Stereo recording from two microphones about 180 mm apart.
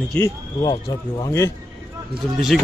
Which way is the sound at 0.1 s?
20° left (ahead or behind).